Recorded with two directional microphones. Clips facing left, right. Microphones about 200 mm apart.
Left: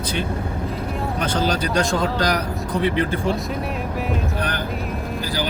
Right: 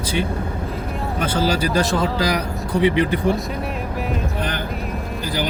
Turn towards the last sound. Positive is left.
turn(degrees=-20)  # may be behind; listen again after turning